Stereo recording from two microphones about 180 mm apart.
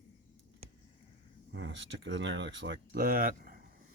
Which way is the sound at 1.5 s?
90° right.